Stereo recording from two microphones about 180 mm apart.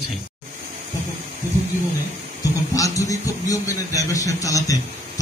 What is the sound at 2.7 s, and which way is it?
A man's voice, 20° left (ahead or behind).